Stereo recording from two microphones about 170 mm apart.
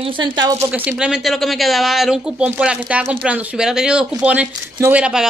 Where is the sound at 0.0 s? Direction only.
30° right (ahead or behind).